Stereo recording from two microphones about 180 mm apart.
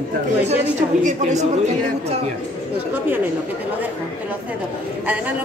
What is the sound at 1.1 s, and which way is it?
A man's voice, 40° right (ahead or behind).